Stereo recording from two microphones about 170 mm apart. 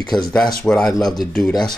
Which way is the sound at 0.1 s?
5° left (ahead or behind).